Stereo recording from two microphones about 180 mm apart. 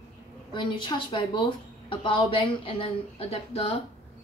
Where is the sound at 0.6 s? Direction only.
25° left (ahead or behind).